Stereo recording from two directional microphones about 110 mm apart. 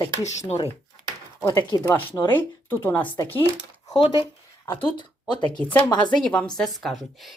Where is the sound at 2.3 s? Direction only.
20° left (ahead or behind).